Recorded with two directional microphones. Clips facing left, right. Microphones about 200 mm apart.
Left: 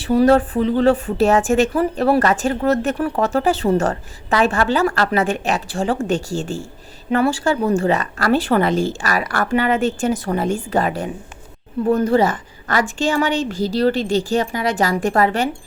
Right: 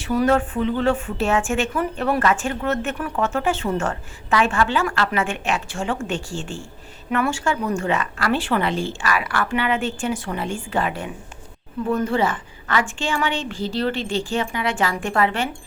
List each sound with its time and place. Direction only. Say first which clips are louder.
0.0 s speech: left 5 dB; 35° left (ahead or behind)